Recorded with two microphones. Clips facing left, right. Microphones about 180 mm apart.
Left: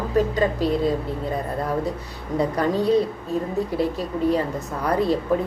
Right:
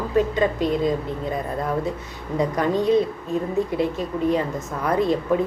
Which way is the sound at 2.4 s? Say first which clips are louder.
Even; 35° left (ahead or behind).